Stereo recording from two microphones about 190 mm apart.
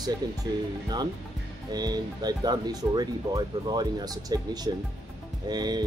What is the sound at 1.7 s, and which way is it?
Speech, 20° right (ahead or behind).